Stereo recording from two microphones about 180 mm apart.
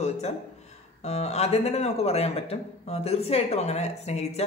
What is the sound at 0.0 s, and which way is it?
Speech, 40° left (ahead or behind).